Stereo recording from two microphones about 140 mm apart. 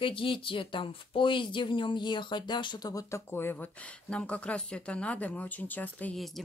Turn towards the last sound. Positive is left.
turn(degrees=10)  # may be behind; listen again after turning